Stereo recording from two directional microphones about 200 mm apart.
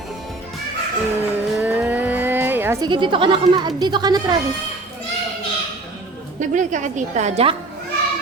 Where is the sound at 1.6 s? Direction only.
10° right (ahead or behind).